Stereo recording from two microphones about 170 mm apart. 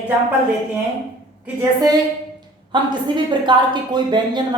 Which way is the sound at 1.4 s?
20° right (ahead or behind).